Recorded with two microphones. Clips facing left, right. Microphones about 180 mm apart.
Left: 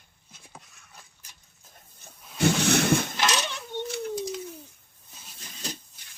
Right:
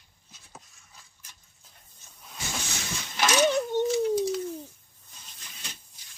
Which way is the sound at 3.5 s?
40° right (ahead or behind).